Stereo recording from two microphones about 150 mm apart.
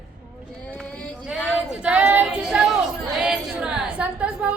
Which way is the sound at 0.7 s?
10° left (ahead or behind).